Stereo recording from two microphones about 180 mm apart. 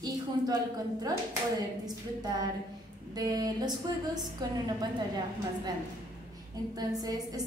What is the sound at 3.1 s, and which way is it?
Speech, 20° right (ahead or behind).